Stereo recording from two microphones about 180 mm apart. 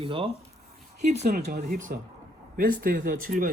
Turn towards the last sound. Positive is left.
turn(degrees=-50)  # may be behind; listen again after turning